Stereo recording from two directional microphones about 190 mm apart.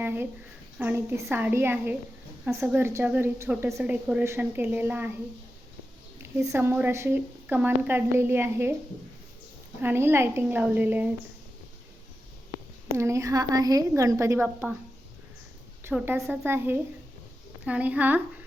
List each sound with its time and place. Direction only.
0.0 s a woman's voice: 10° right (ahead or behind)
6.3 s a woman's voice: 10° right (ahead or behind)
9.8 s a woman's voice: 10° right (ahead or behind)
12.9 s a woman's voice: 15° right (ahead or behind)
15.8 s a woman's voice: 10° right (ahead or behind)